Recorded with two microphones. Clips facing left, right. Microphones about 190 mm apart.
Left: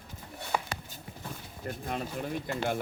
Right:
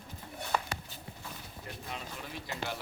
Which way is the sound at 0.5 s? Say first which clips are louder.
Left 1 dB; 10° left (ahead or behind).